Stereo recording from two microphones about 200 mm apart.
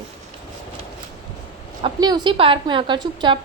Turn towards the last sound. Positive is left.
turn(degrees=-20)  # may be behind; listen again after turning